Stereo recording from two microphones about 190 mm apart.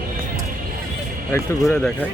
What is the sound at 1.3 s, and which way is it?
Speech, 10° left (ahead or behind).